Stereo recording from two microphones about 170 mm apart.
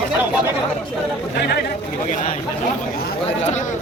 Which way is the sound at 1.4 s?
75° left (ahead or behind).